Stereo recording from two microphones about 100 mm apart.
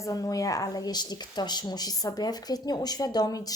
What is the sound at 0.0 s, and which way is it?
Speech, 35° left (ahead or behind).